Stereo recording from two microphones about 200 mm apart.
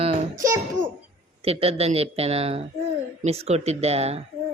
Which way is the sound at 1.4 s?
30° right (ahead or behind).